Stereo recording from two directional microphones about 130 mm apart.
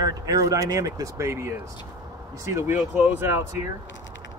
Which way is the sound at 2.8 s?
10° right (ahead or behind).